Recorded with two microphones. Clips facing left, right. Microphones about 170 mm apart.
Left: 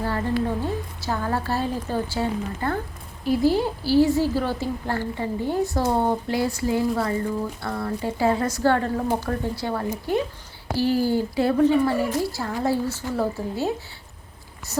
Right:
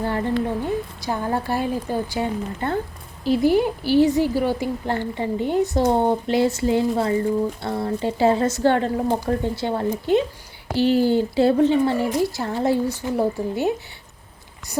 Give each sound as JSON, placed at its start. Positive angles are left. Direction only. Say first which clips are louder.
{"t": 0.0, "sound": "a woman's voice", "louder": "right 2 dB", "side_deg": -20}